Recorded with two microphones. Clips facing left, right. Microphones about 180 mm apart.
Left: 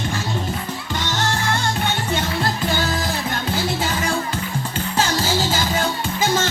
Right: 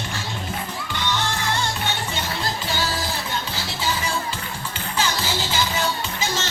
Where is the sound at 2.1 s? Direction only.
55° left (ahead or behind).